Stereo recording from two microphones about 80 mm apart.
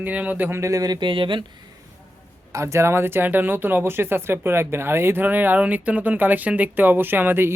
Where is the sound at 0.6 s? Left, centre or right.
Right.